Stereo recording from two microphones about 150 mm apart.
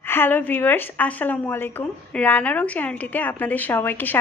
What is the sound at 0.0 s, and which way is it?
A woman's voice, 15° left (ahead or behind).